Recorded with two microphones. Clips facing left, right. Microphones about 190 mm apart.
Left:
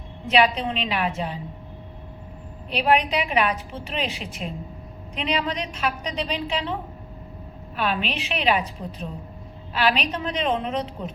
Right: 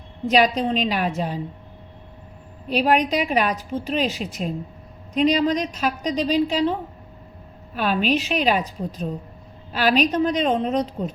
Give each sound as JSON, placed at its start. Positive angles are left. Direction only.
{"t": 0.3, "sound": "a woman's voice", "side_deg": -40}
{"t": 2.6, "sound": "a woman's voice", "side_deg": -40}
{"t": 7.8, "sound": "a woman's voice", "side_deg": -40}